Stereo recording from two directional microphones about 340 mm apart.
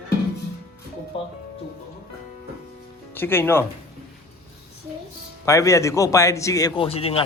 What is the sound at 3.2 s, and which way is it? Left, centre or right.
Speech, centre.